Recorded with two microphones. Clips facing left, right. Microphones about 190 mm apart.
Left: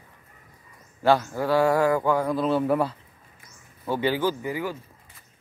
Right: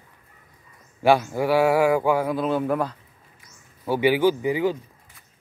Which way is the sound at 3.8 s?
10° right (ahead or behind).